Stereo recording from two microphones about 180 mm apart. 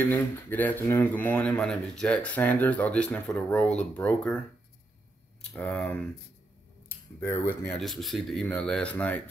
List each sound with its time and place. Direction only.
0.0 s speech: 10° left (ahead or behind)
5.4 s speech: 5° left (ahead or behind)